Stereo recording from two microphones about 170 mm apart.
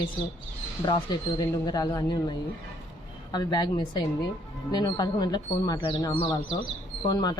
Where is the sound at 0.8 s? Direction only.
25° left (ahead or behind).